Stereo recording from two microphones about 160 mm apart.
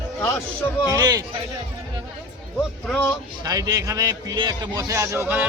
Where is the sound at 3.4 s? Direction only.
25° right (ahead or behind).